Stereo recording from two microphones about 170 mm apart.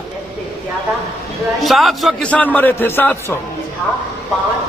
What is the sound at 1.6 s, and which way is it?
A man's voice, centre (ahead or behind).